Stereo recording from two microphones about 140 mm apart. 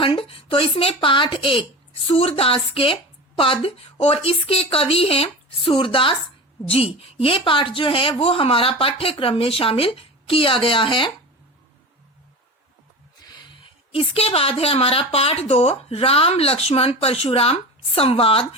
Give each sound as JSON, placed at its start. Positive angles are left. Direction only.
{"t": 0.0, "sound": "a woman's voice", "side_deg": 40}
{"t": 13.2, "sound": "a woman's voice", "side_deg": 35}